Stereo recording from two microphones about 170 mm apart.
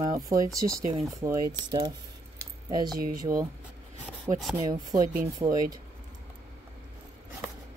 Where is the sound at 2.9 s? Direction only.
60° right (ahead or behind).